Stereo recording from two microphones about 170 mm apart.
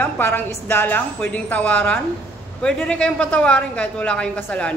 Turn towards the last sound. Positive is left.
turn(degrees=10)  # may be behind; listen again after turning